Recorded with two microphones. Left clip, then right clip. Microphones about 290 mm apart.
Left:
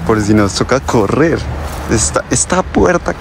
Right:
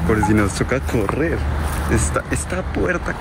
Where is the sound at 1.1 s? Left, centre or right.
Left.